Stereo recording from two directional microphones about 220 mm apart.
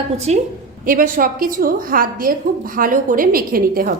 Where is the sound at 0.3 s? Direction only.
30° right (ahead or behind).